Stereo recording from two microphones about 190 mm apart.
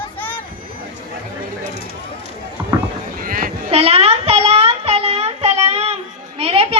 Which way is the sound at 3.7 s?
30° right (ahead or behind).